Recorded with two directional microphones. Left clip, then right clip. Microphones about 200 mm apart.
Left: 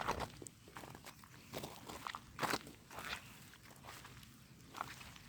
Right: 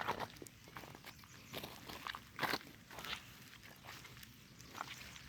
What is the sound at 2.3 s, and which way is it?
Walk, 5° left (ahead or behind).